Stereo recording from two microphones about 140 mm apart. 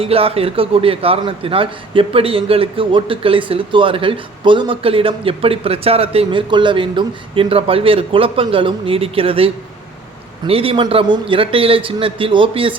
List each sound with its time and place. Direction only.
0.0 s a man's voice: 45° right (ahead or behind)